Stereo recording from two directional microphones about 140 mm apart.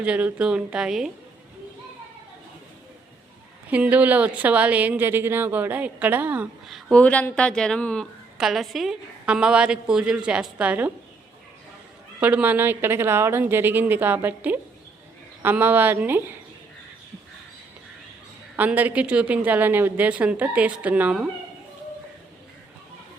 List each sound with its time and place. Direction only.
0.0 s a woman's voice: 10° right (ahead or behind)
3.7 s a woman's voice: 10° right (ahead or behind)
6.7 s a woman's voice: centre (ahead or behind)
7.0 s a woman's voice: 10° left (ahead or behind); by 10.9 s 10° right (ahead or behind)
12.2 s a woman's voice: 10° right (ahead or behind)
18.5 s a woman's voice: 10° right (ahead or behind)